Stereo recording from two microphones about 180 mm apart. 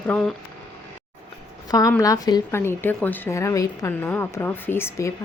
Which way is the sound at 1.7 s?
20° left (ahead or behind).